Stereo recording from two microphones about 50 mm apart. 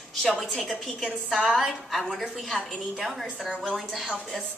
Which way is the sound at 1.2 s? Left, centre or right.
Centre.